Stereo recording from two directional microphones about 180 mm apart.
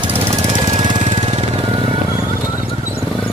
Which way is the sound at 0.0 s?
25° right (ahead or behind).